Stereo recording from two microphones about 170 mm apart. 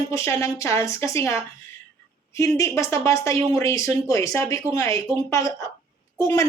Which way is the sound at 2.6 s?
20° left (ahead or behind).